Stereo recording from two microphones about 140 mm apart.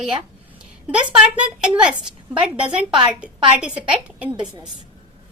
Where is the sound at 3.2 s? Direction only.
10° right (ahead or behind).